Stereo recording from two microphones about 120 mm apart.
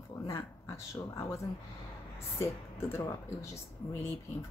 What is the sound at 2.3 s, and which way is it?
Speech, 25° left (ahead or behind).